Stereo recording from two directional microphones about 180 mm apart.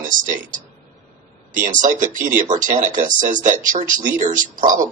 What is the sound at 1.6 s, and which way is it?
Speech, 45° right (ahead or behind).